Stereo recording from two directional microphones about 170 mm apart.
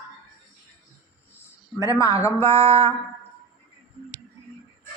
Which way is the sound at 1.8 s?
20° left (ahead or behind).